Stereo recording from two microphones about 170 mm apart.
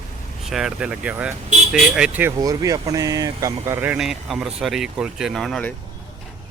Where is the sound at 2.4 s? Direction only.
20° right (ahead or behind); by 5.7 s 5° left (ahead or behind).